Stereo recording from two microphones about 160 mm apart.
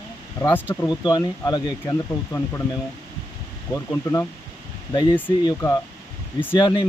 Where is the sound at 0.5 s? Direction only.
10° left (ahead or behind).